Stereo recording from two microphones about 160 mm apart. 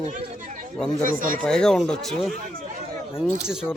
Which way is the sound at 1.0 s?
55° right (ahead or behind).